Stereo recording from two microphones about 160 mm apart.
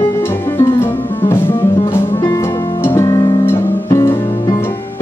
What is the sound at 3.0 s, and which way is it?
Music, 20° left (ahead or behind).